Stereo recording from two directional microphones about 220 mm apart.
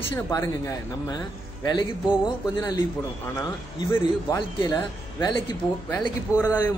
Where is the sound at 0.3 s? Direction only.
15° left (ahead or behind).